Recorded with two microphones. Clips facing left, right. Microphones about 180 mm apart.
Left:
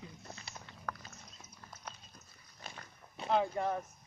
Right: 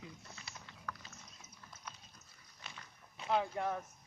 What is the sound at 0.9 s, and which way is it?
Horse, 50° left (ahead or behind).